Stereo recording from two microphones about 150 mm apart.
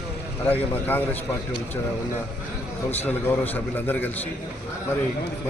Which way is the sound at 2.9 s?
10° left (ahead or behind).